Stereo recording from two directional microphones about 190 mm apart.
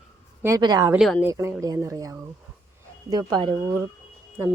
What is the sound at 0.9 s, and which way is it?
Speech, centre (ahead or behind).